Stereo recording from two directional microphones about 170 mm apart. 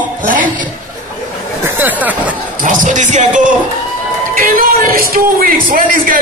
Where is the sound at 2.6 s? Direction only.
50° right (ahead or behind).